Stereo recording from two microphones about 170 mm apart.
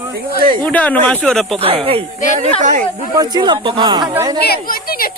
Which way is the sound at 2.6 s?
50° right (ahead or behind).